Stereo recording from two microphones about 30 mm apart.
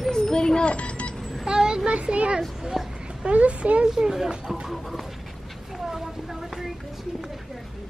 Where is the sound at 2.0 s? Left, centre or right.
Right.